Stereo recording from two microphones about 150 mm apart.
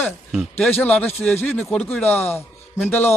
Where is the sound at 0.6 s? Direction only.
10° left (ahead or behind).